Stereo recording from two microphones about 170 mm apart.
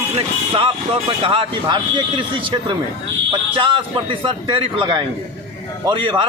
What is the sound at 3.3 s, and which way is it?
A man's voice, 30° right (ahead or behind).